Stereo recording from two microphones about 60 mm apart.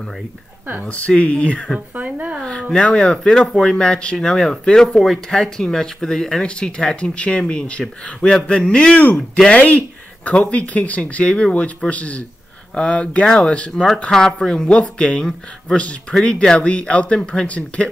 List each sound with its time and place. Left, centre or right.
0.8 s speech: left
2.0 s speech: right
2.7 s speech: centre